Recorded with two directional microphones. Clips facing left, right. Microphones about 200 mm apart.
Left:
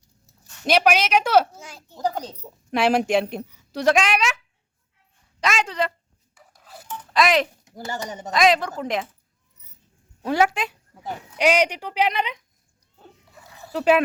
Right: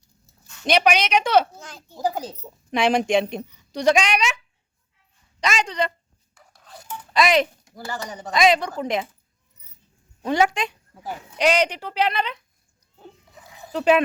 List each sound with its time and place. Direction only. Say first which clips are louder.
0.6 s a woman's voice: even; 5° left (ahead or behind)
1.9 s a woman's voice: right 1 dB; 5° right (ahead or behind)
2.6 s a woman's voice: even; 5° left (ahead or behind)
5.4 s a woman's voice: even; centre (ahead or behind)
6.3 s dishes: even; 5° left (ahead or behind)
7.1 s speech: right 1 dB; centre (ahead or behind)
7.6 s speech: left 1 dB; 20° left (ahead or behind)
8.3 s a woman's voice: even; centre (ahead or behind)
10.2 s speech: even; 5° left (ahead or behind)
13.0 s a sound: right 3 dB; 15° right (ahead or behind)
13.7 s speech: even; 5° left (ahead or behind)